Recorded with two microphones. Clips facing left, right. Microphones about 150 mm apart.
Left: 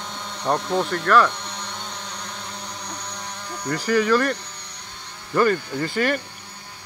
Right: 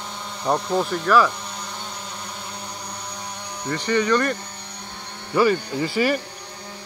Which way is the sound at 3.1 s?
5° right (ahead or behind).